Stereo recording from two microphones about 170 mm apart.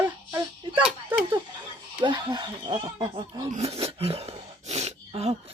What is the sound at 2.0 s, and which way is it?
Snicker, 25° right (ahead or behind).